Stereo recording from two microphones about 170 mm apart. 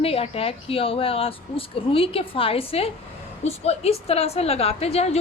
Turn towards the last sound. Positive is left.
turn(degrees=40)  # may be behind; listen again after turning